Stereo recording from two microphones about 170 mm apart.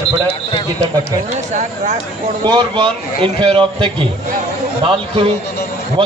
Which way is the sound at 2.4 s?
25° right (ahead or behind).